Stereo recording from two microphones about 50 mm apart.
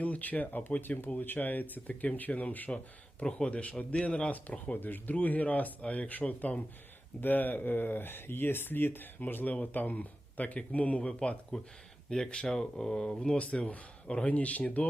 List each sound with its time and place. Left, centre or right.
0.0 s speech: left
2.7 s speech: centre
4.3 s speech: left
12.1 s speech: centre